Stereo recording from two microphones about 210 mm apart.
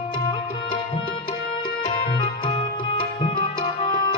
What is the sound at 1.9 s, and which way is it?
Tabla, 25° left (ahead or behind).